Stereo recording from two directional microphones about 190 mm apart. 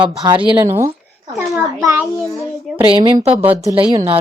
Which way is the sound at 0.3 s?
20° right (ahead or behind).